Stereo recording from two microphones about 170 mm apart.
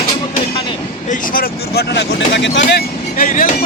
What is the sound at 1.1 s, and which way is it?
Speech, 55° left (ahead or behind).